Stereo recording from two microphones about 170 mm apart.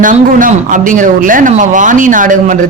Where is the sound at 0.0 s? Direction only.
50° right (ahead or behind).